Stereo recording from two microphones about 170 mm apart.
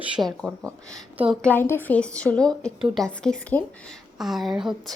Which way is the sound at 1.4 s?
10° left (ahead or behind).